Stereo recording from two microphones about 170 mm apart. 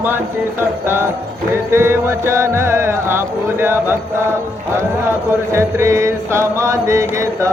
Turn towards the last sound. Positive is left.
turn(degrees=-20)  # may be behind; listen again after turning